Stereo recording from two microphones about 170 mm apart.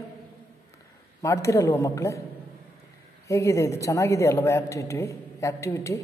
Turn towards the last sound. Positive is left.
turn(degrees=15)  # may be behind; listen again after turning